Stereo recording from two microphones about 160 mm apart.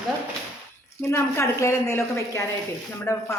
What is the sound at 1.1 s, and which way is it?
A woman's voice, 15° left (ahead or behind).